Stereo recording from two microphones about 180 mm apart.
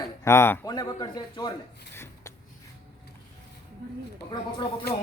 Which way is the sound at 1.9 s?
15° left (ahead or behind).